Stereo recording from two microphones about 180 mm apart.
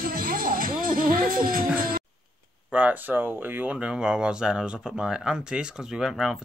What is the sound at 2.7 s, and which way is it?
Speech, 10° right (ahead or behind).